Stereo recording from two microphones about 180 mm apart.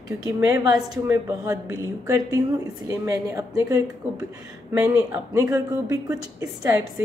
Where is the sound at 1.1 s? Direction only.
20° right (ahead or behind).